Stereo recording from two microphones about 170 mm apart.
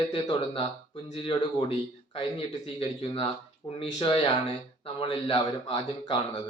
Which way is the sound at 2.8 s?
30° left (ahead or behind).